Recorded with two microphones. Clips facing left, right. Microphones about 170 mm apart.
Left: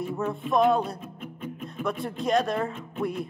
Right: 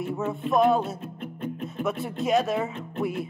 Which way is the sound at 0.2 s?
Centre (ahead or behind).